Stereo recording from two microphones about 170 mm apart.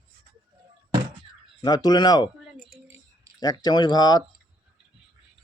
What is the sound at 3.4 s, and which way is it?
Speech, 25° left (ahead or behind).